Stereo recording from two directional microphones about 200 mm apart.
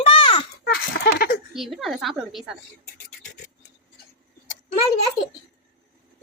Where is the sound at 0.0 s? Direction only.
25° left (ahead or behind).